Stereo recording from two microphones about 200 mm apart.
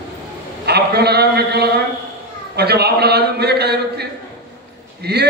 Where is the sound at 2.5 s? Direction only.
55° right (ahead or behind).